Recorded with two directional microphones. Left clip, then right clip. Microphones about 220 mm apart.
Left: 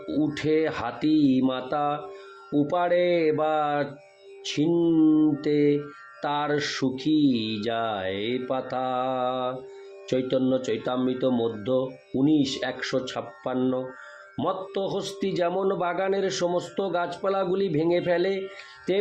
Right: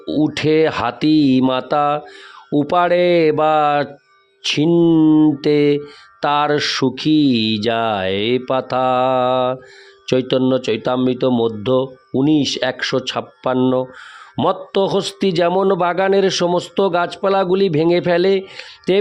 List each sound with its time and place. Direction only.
0.0 s a man's voice: 50° right (ahead or behind)